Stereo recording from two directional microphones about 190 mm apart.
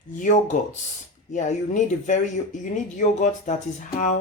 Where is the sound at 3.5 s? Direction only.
40° left (ahead or behind).